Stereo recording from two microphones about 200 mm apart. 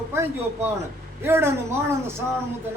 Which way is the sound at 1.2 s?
10° right (ahead or behind).